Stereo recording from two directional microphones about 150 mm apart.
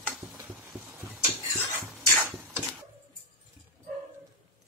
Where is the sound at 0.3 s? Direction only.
15° right (ahead or behind).